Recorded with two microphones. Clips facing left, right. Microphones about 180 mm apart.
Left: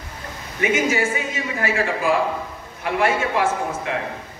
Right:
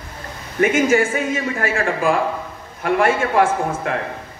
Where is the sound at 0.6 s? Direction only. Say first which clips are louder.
Right 5 dB; 50° right (ahead or behind).